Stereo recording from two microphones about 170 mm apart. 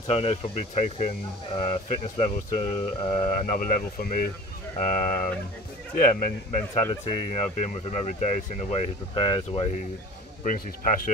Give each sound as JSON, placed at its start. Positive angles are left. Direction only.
{"t": 0.0, "sound": "speech", "side_deg": 35}
{"t": 6.8, "sound": "speech", "side_deg": 30}
{"t": 10.4, "sound": "speech", "side_deg": 50}